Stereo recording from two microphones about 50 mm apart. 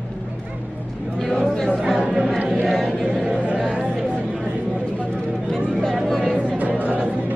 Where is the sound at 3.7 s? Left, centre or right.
Right.